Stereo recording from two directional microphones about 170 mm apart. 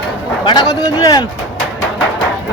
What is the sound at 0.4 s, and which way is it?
Speech, 25° left (ahead or behind).